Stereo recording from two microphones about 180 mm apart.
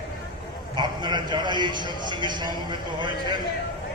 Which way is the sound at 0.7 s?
25° right (ahead or behind).